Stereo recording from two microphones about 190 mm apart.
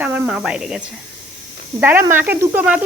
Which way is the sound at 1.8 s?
10° right (ahead or behind).